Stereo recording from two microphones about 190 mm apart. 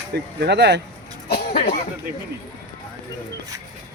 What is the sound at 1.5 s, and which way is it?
Speech, 35° left (ahead or behind).